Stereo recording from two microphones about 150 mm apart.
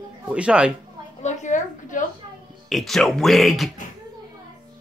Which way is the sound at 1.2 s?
55° left (ahead or behind).